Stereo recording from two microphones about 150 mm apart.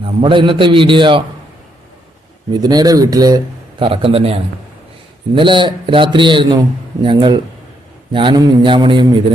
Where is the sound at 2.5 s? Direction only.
25° right (ahead or behind).